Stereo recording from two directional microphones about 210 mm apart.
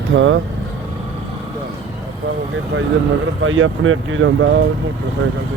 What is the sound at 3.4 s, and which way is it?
Speech, 75° right (ahead or behind).